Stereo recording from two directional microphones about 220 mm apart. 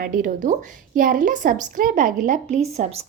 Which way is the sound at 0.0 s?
40° right (ahead or behind).